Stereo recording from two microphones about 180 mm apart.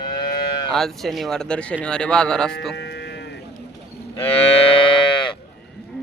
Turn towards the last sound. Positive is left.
turn(degrees=25)  # may be behind; listen again after turning